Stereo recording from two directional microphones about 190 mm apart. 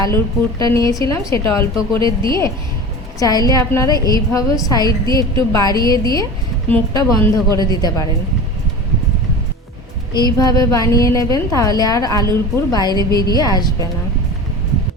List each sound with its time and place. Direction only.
0.6 s a woman's voice: 15° left (ahead or behind)
2.0 s speech: 25° right (ahead or behind)
3.2 s a woman's voice: 20° left (ahead or behind)
10.2 s a woman's voice: 20° left (ahead or behind)